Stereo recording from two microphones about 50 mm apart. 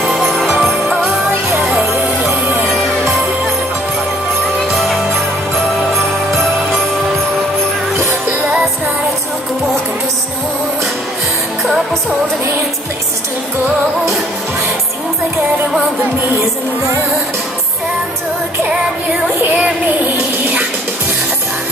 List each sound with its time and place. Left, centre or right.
0.0 s music: centre
4.6 s music: centre
19.4 s a sound: right